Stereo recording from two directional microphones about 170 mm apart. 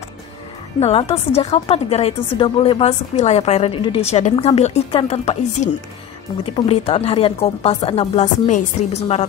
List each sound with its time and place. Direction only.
0.7 s a woman's voice: 35° left (ahead or behind)